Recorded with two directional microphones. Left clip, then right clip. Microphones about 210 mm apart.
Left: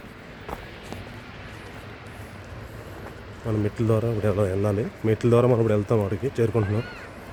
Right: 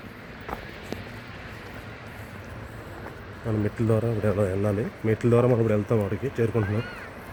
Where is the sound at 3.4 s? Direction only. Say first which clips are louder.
Left 1 dB; 15° left (ahead or behind).